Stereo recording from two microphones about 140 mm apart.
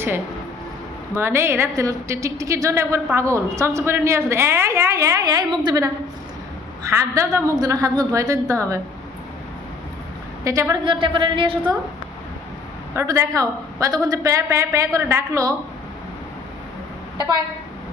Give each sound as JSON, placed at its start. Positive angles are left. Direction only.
{"t": 1.1, "sound": "a woman's voice", "side_deg": -15}
{"t": 10.4, "sound": "a woman's voice", "side_deg": -20}
{"t": 10.8, "sound": "a woman's voice", "side_deg": -35}
{"t": 12.9, "sound": "a woman's voice", "side_deg": -20}